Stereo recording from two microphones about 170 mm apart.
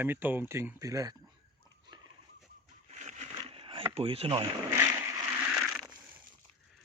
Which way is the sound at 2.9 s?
45° right (ahead or behind).